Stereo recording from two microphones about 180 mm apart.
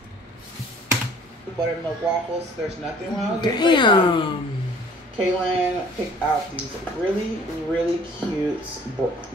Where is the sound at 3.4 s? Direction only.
25° left (ahead or behind).